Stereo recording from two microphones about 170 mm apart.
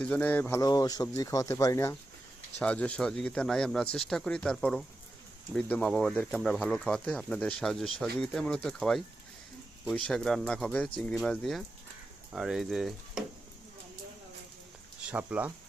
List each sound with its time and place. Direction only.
0.0 s speech: 10° left (ahead or behind)
15.0 s speech: 10° right (ahead or behind)